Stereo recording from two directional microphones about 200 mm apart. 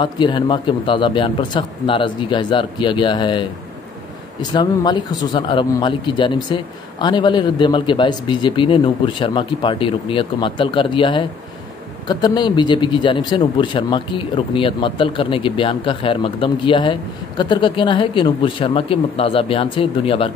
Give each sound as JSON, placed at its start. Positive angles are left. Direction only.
{"t": 0.0, "sound": "speech", "side_deg": 25}